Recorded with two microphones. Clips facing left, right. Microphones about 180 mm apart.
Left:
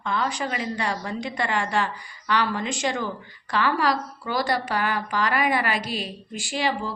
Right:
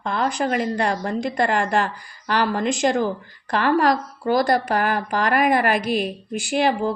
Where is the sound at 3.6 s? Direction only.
50° right (ahead or behind).